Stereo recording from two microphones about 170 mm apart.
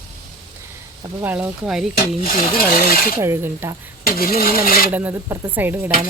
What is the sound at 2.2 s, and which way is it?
Stir, 60° left (ahead or behind).